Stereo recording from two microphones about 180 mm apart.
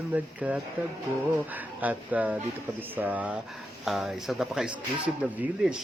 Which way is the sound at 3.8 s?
Centre (ahead or behind).